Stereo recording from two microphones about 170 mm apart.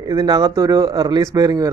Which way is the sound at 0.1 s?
25° right (ahead or behind).